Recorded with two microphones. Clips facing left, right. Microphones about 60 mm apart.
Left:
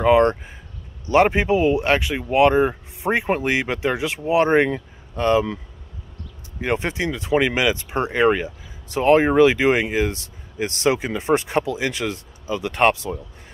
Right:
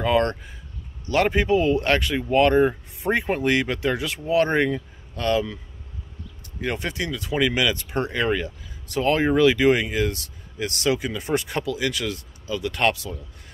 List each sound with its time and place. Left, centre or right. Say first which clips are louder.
0.0 s speech: left 6 dB; left
6.6 s speech: left 4 dB; left